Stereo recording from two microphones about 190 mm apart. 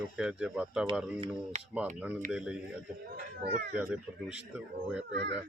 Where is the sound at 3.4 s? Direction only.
60° right (ahead or behind).